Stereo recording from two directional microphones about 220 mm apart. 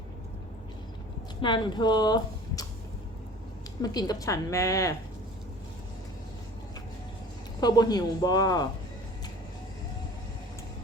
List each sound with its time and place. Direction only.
1.4 s speech: 20° left (ahead or behind)
3.8 s a woman's voice: 15° left (ahead or behind)
7.6 s a woman's voice: 20° left (ahead or behind)